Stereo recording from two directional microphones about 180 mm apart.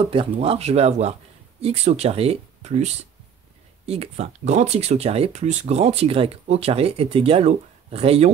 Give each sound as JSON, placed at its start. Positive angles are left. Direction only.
{"t": 0.1, "sound": "speech", "side_deg": -30}